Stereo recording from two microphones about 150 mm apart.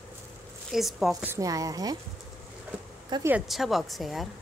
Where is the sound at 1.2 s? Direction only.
20° right (ahead or behind).